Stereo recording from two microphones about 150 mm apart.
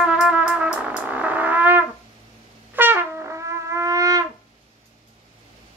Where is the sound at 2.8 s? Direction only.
15° right (ahead or behind).